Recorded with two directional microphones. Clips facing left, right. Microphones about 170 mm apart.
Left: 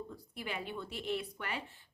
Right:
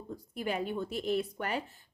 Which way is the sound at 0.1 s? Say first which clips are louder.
Right 7 dB; 40° right (ahead or behind).